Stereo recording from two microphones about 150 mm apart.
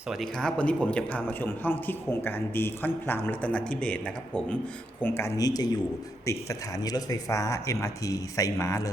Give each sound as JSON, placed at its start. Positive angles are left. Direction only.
{"t": 0.1, "sound": "speech", "side_deg": 0}
{"t": 5.0, "sound": "speech", "side_deg": 20}